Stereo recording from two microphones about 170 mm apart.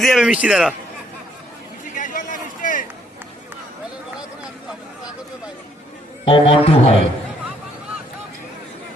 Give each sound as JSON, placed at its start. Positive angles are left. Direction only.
{"t": 0.0, "sound": "a man's voice", "side_deg": 0}
{"t": 2.0, "sound": "a sound", "side_deg": 55}
{"t": 6.2, "sound": "a man's voice", "side_deg": 30}